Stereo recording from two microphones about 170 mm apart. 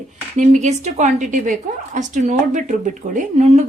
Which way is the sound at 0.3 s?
45° right (ahead or behind).